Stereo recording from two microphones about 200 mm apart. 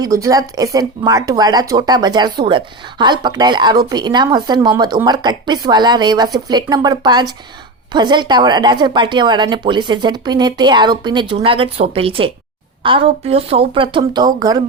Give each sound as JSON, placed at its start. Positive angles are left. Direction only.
{"t": 0.0, "sound": "speech", "side_deg": -15}